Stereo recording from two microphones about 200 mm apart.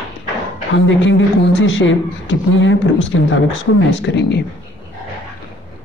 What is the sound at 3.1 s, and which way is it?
Speech, 80° left.